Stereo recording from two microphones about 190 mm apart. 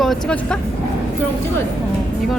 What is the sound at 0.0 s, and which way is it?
Speech, centre (ahead or behind).